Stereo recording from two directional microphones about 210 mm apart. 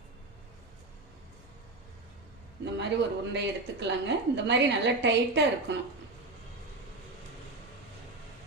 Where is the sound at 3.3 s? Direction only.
55° right (ahead or behind).